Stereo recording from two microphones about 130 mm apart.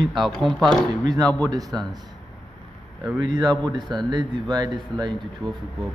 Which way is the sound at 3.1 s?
35° right (ahead or behind).